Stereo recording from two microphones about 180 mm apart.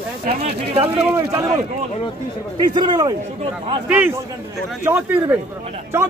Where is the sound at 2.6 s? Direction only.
25° right (ahead or behind).